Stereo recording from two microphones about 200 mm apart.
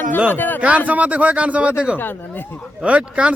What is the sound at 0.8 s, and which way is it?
Speech, 5° right (ahead or behind).